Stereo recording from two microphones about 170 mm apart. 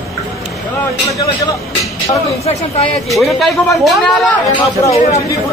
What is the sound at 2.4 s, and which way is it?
Speech, 40° left (ahead or behind).